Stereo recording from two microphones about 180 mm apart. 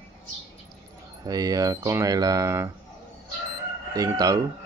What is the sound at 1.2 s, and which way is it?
Speech, 20° right (ahead or behind).